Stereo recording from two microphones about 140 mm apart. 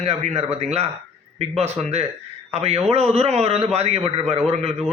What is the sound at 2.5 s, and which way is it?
Speech, 50° right (ahead or behind).